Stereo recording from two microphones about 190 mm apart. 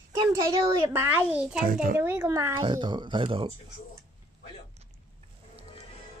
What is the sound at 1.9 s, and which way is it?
Speech, 10° right (ahead or behind).